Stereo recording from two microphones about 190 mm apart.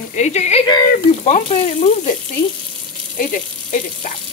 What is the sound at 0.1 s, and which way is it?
Frying, 35° left (ahead or behind).